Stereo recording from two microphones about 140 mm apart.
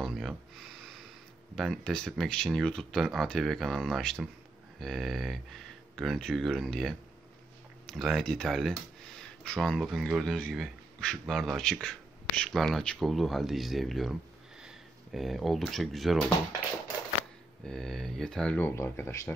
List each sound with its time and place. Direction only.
0.0 s a sound: centre (ahead or behind)
1.5 s speech: centre (ahead or behind)
15.1 s speech: centre (ahead or behind)
17.6 s speech: 5° left (ahead or behind)
18.8 s speech: 20° left (ahead or behind)